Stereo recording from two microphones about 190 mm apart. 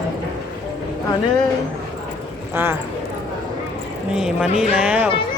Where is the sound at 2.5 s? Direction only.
10° right (ahead or behind).